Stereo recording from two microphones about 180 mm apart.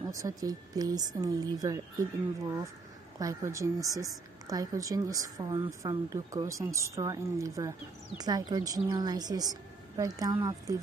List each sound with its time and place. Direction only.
0.1 s a woman's voice: 20° right (ahead or behind)
3.2 s a woman's voice: 15° right (ahead or behind)